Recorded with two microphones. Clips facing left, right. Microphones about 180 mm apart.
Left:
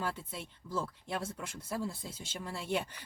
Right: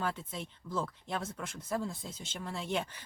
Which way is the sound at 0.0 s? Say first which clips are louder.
Right 2 dB; 10° left (ahead or behind).